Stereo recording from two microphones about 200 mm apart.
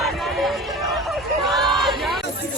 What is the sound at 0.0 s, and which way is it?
Music, centre (ahead or behind).